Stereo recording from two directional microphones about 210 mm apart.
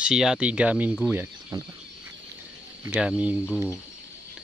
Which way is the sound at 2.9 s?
5° right (ahead or behind).